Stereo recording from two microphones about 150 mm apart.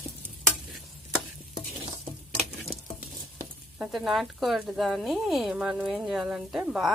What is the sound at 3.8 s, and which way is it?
Speech, centre (ahead or behind).